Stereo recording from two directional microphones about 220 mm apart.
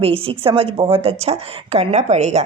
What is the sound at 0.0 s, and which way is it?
A woman's voice, 25° right (ahead or behind).